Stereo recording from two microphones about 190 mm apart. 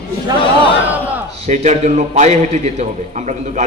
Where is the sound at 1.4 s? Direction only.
40° right (ahead or behind).